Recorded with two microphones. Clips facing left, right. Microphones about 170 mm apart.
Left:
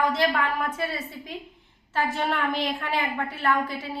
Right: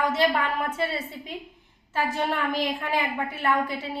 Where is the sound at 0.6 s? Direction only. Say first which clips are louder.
Right 1 dB; 30° right (ahead or behind).